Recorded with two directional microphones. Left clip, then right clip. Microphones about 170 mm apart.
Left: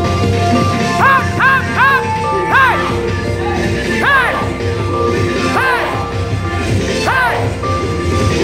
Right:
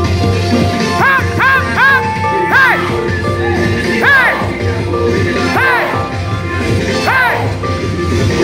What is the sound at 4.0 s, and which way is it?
Music, centre (ahead or behind).